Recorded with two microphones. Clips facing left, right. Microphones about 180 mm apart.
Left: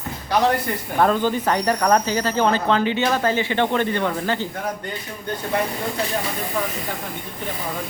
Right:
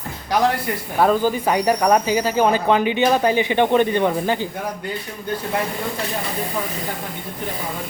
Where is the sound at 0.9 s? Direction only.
5° right (ahead or behind).